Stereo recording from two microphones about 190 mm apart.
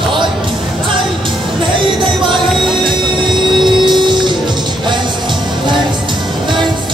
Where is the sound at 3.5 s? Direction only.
25° right (ahead or behind).